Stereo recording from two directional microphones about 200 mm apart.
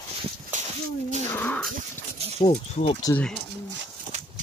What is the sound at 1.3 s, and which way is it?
Dog, 5° left (ahead or behind).